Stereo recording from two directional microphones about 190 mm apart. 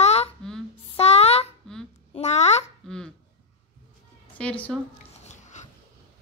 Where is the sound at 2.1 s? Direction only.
35° left (ahead or behind).